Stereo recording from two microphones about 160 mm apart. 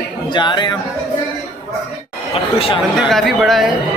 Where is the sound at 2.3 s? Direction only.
35° left (ahead or behind).